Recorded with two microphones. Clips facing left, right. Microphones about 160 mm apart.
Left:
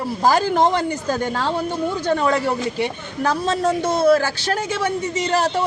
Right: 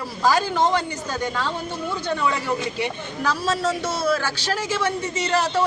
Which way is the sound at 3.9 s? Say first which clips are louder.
Left 10 dB; 55° left (ahead or behind).